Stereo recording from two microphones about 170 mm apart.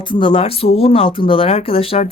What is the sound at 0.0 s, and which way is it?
A woman's voice, 30° left (ahead or behind).